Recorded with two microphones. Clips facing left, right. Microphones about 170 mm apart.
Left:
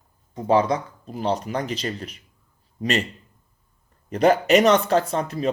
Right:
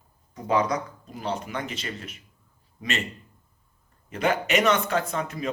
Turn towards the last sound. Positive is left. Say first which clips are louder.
# left 5 dB
turn(degrees=35)  # may be behind; listen again after turning